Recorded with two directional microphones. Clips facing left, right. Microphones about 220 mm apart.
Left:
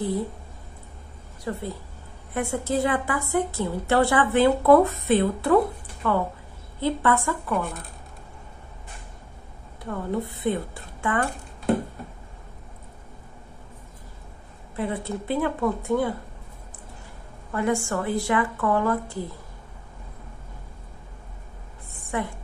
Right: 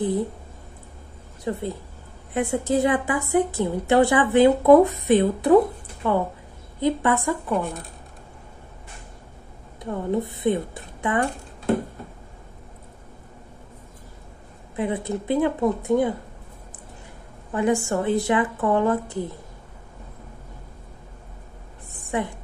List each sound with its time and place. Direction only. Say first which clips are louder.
1.4 s a woman's voice: right 3 dB; 20° right (ahead or behind)
9.8 s speech: right 3 dB; 20° right (ahead or behind)
14.8 s speech: right 3 dB; 15° right (ahead or behind)
17.5 s speech: right 3 dB; 20° right (ahead or behind)
22.1 s speech: right 3 dB; 20° right (ahead or behind)